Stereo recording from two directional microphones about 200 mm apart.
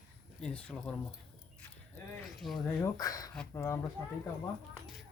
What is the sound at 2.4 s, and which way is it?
Speech, centre (ahead or behind).